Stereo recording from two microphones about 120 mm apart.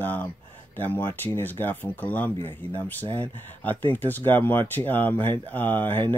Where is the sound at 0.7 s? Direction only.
15° left (ahead or behind).